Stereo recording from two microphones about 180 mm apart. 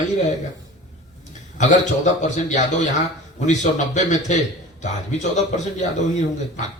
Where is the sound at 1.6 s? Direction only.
40° left (ahead or behind).